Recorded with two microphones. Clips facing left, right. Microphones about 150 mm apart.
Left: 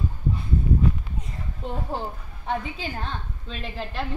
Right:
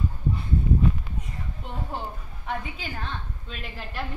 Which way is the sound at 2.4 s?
30° left (ahead or behind).